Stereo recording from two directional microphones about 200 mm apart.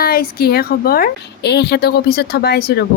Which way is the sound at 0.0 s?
50° left (ahead or behind).